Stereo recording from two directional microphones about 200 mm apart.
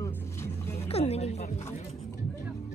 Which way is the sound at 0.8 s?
30° left (ahead or behind).